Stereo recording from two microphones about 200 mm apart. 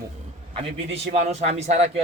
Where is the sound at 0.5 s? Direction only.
30° right (ahead or behind).